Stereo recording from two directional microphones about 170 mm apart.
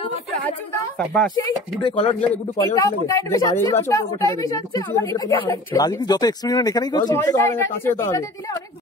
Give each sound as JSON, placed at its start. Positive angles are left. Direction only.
{"t": 0.9, "sound": "speech", "side_deg": 5}
{"t": 1.3, "sound": "speech", "side_deg": 30}
{"t": 2.5, "sound": "speech", "side_deg": 20}